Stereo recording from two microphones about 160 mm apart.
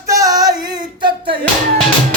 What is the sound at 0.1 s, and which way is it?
Female singing, 20° right (ahead or behind).